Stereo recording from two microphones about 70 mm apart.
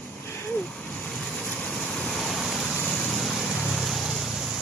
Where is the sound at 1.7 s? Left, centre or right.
Centre.